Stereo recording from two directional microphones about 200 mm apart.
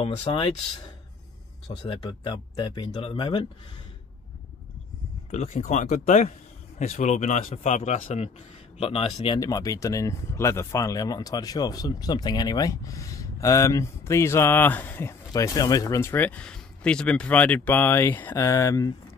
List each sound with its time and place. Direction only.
0.0 s speech: 25° left (ahead or behind)
5.3 s speech: 30° left (ahead or behind); by 18.9 s 15° left (ahead or behind)